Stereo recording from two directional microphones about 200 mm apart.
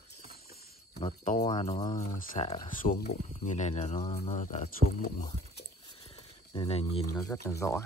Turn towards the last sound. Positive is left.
turn(degrees=15)  # may be behind; listen again after turning